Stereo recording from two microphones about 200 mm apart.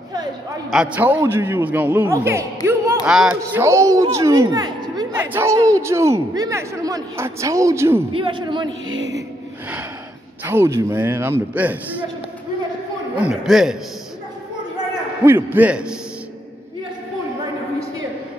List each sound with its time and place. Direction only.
0.7 s a man's voice: 5° right (ahead or behind)
8.1 s a man's voice: 25° right (ahead or behind)
8.8 s music: 75° right (ahead or behind)
10.4 s a man's voice: 10° right (ahead or behind)
13.2 s a man's voice: centre (ahead or behind)
15.2 s a man's voice: 10° right (ahead or behind)